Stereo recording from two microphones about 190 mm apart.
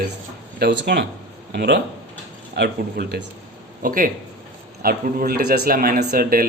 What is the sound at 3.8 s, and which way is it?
A man's voice, 45° right (ahead or behind).